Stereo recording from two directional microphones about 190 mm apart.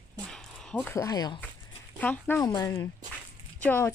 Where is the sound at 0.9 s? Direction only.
20° left (ahead or behind).